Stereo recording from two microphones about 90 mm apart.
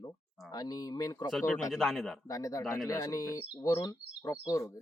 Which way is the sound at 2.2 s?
40° left (ahead or behind).